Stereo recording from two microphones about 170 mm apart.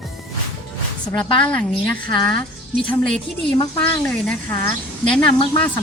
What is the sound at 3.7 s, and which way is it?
Speech, 10° left (ahead or behind).